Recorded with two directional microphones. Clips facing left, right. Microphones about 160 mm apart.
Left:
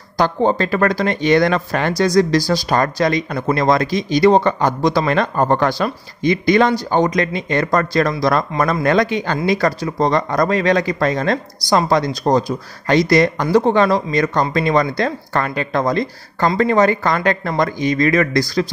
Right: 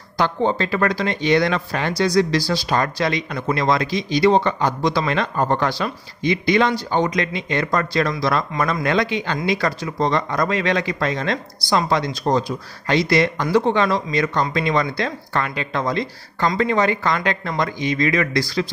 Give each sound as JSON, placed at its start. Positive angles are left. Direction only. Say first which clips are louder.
{"t": 0.2, "sound": "speech", "louder": "left 4 dB", "side_deg": 40}